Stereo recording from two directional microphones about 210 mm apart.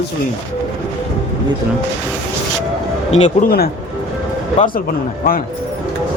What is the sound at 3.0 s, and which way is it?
Speech, 30° left (ahead or behind).